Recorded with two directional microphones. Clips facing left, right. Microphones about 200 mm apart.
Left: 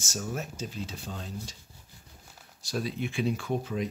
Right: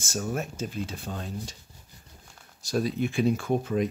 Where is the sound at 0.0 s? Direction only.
55° right (ahead or behind).